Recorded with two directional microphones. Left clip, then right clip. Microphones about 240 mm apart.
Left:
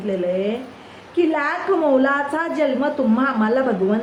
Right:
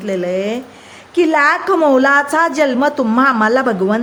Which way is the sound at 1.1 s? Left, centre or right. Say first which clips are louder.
Right 7 dB; right.